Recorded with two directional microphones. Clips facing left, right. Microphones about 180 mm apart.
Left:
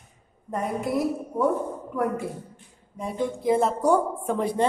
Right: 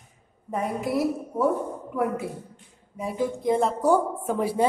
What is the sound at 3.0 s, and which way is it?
A woman's voice, 5° right (ahead or behind).